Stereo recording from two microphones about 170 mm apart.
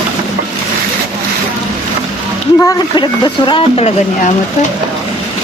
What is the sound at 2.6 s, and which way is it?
Speech, 25° left (ahead or behind).